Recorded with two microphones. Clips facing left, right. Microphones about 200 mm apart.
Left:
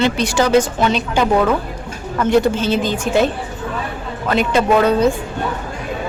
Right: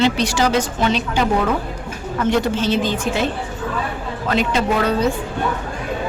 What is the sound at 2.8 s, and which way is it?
Speech, 45° left (ahead or behind).